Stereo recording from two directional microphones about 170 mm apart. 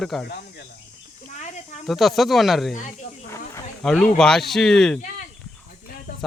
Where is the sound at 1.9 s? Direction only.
Centre (ahead or behind).